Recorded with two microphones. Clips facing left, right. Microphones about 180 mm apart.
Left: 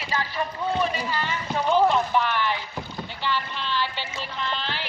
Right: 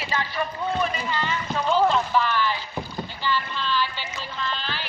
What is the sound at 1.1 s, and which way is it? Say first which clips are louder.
Speech: right 1 dB; 15° left (ahead or behind).